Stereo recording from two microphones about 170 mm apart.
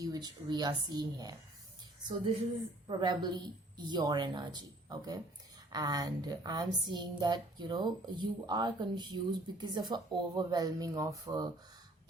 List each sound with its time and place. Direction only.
0.0 s speech: 25° right (ahead or behind)
2.8 s speech: 25° right (ahead or behind)